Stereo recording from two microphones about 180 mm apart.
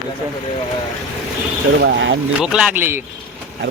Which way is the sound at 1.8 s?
90° right.